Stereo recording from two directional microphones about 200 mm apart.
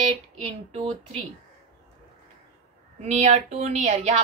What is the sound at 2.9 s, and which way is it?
Speech, 35° right (ahead or behind).